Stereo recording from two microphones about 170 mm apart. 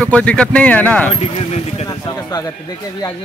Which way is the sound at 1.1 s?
35° left (ahead or behind).